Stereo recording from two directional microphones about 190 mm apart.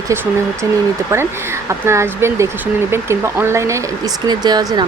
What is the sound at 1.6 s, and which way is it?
Speech, 15° right (ahead or behind).